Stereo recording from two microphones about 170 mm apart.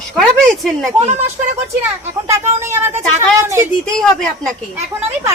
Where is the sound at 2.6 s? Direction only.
15° right (ahead or behind).